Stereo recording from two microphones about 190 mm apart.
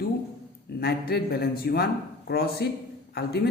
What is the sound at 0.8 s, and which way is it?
Speech, 55° left (ahead or behind).